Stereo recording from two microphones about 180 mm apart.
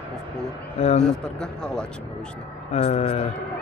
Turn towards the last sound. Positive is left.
turn(degrees=40)  # may be behind; listen again after turning